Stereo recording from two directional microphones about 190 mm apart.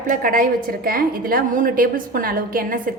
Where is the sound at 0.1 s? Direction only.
45° right (ahead or behind).